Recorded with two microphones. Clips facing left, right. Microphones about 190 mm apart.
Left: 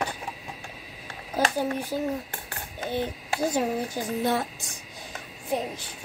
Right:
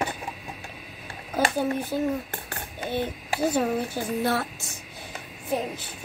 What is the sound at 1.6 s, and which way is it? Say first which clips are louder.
Speech: right 2 dB; 10° left (ahead or behind).